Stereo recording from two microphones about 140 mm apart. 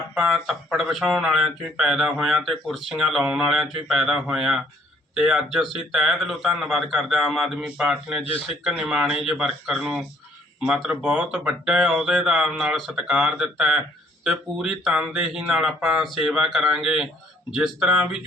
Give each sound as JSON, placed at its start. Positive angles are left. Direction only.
{"t": 0.1, "sound": "speech", "side_deg": -5}